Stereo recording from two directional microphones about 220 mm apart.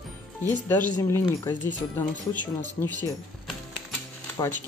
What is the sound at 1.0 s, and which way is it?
Speech, 15° left (ahead or behind).